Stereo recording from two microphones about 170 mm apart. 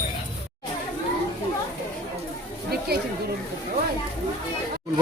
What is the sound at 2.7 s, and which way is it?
Chatter, 65° right (ahead or behind).